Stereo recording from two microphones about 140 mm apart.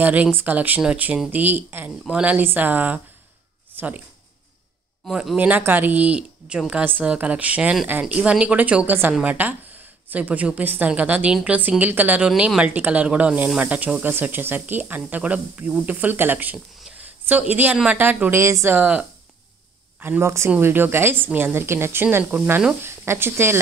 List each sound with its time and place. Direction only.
0.0 s a woman's voice: 10° right (ahead or behind)
5.0 s a woman's voice: 5° right (ahead or behind)
16.5 s a sound: centre (ahead or behind)
17.2 s a woman's voice: 15° right (ahead or behind)